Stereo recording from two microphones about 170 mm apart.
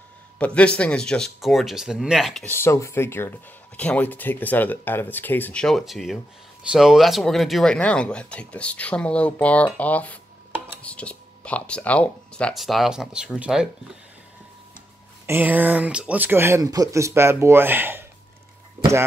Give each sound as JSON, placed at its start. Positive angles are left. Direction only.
{"t": 0.4, "sound": "speech", "side_deg": 5}
{"t": 2.4, "sound": "speech", "side_deg": 15}
{"t": 15.2, "sound": "speech", "side_deg": -10}